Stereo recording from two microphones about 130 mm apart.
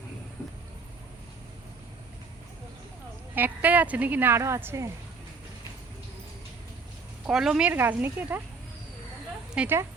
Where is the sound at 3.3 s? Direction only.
15° right (ahead or behind).